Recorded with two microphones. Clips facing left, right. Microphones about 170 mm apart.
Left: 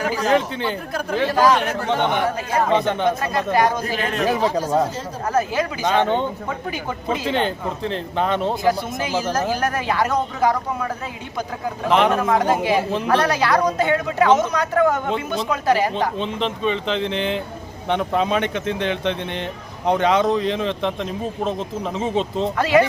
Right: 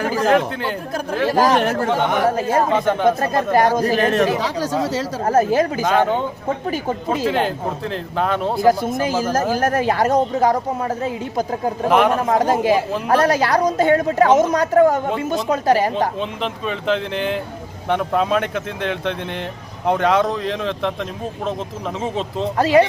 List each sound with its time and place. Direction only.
0.0 s chatter: 50° right (ahead or behind)
0.5 s speech: 5° right (ahead or behind)
1.4 s a man's voice: 50° right (ahead or behind)
4.4 s speech: 85° right
5.2 s speech: 45° right (ahead or behind)
5.8 s speech: 5° right (ahead or behind)
6.5 s a man's voice: 40° right (ahead or behind)
7.3 s speech: 5° right (ahead or behind)
9.0 s a man's voice: 45° right (ahead or behind)
16.1 s speech: 5° right (ahead or behind)
22.5 s a man's voice: 35° right (ahead or behind)